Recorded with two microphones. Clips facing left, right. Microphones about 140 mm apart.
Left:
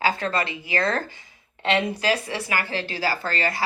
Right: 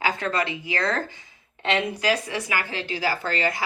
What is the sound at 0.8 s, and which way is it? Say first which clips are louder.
Speech: left 2 dB; 25° left (ahead or behind).